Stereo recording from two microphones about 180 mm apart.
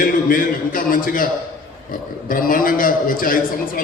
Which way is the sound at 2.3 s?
50° left (ahead or behind).